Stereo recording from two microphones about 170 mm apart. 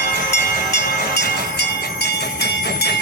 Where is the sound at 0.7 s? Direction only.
80° left.